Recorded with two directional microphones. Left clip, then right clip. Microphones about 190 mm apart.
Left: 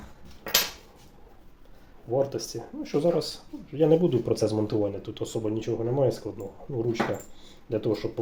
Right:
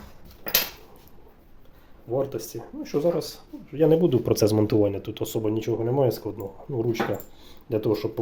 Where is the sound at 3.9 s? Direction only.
30° right (ahead or behind).